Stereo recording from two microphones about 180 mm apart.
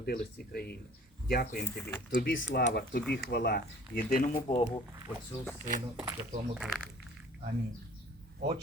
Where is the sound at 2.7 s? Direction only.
60° left (ahead or behind).